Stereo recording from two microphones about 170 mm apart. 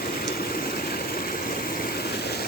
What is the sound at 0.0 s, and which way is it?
Stream, 60° left (ahead or behind).